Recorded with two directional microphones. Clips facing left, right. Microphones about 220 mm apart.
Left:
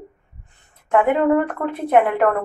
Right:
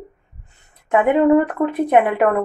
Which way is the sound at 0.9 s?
15° right (ahead or behind).